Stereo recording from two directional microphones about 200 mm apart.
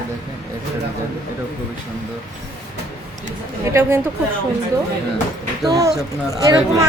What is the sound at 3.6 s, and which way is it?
Speech, 15° right (ahead or behind).